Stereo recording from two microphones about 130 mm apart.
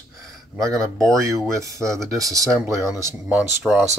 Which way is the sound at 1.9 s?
Centre (ahead or behind).